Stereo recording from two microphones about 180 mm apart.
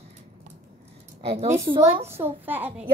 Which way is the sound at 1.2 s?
35° right (ahead or behind).